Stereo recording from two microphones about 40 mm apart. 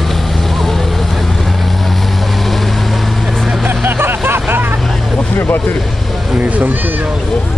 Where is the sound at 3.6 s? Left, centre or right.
Right.